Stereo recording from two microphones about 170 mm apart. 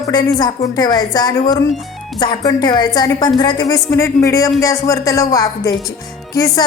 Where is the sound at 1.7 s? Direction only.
Centre (ahead or behind).